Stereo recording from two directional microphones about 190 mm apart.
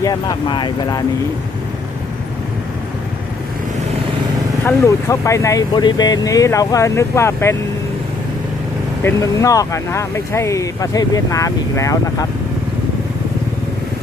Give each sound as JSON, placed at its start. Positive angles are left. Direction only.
{"t": 0.0, "sound": "speech", "side_deg": 20}
{"t": 4.6, "sound": "speech", "side_deg": 15}
{"t": 9.0, "sound": "speech", "side_deg": 15}